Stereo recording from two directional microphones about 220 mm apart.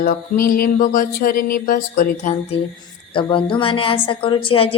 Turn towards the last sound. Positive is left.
turn(degrees=25)  # may be behind; listen again after turning